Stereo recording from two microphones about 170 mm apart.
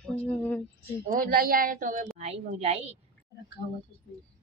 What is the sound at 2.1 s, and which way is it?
Speech, 40° right (ahead or behind).